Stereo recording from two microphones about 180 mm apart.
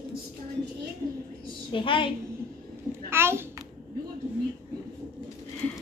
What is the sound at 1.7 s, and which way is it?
Speech, 30° left (ahead or behind).